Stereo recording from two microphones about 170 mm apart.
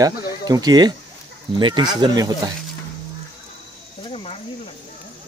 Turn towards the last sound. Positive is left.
turn(degrees=35)  # may be behind; listen again after turning